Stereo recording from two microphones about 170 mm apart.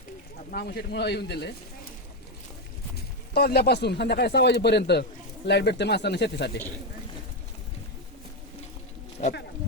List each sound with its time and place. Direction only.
0.5 s speech: 70° left (ahead or behind)
2.9 s speech: 70° left (ahead or behind)
5.5 s speech: 90° left
9.2 s speech: 45° left (ahead or behind)